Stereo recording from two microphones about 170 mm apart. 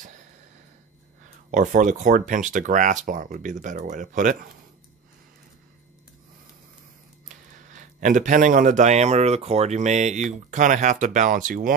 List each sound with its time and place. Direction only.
1.5 s a man's voice: 50° right (ahead or behind)
7.2 s a man's voice: 45° right (ahead or behind)